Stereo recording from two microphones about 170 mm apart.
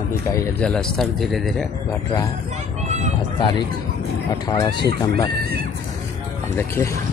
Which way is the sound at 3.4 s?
25° left (ahead or behind).